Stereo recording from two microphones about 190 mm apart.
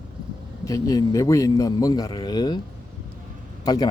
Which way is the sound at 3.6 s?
20° left (ahead or behind).